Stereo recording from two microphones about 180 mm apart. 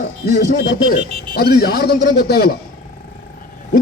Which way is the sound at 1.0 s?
35° right (ahead or behind).